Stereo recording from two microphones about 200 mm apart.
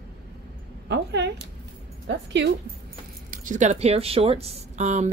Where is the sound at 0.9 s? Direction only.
60° right (ahead or behind).